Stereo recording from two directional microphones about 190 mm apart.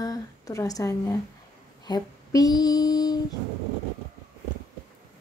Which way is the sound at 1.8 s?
20° left (ahead or behind).